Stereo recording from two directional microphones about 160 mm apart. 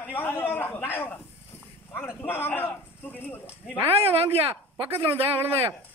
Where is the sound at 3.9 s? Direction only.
35° right (ahead or behind).